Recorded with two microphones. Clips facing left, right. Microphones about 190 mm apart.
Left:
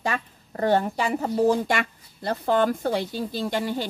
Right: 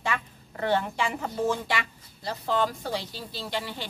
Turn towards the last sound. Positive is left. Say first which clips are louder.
# left 7 dB
turn(degrees=45)  # may be behind; listen again after turning